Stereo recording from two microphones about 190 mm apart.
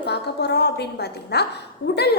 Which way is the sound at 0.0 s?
60° left (ahead or behind).